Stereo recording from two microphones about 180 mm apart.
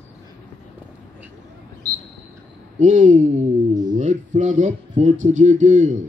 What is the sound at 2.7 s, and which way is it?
Speech, 40° right (ahead or behind).